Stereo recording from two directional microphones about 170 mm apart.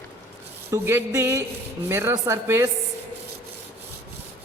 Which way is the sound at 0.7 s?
15° right (ahead or behind).